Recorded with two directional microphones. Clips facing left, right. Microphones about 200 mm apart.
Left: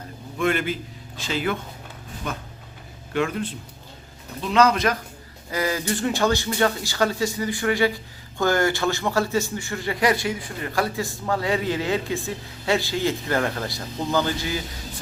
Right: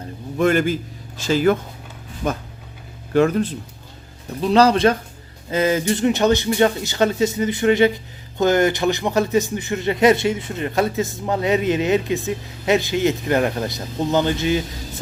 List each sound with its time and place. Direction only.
0.3 s a man's voice: 40° right (ahead or behind); by 14.6 s 20° right (ahead or behind)